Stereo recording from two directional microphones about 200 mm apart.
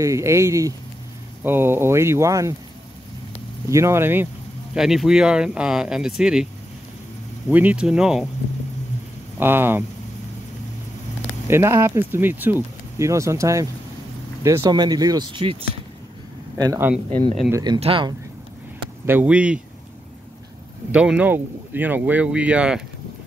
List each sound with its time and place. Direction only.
0.0 s speech: 15° right (ahead or behind)
3.6 s speech: 15° right (ahead or behind)
7.4 s speech: 5° right (ahead or behind)
9.4 s speech: 10° right (ahead or behind)
11.4 s speech: 15° right (ahead or behind)
16.5 s speech: 15° right (ahead or behind)
17.7 s speech: 30° right (ahead or behind)
19.0 s speech: 10° right (ahead or behind)
20.9 s speech: 5° right (ahead or behind)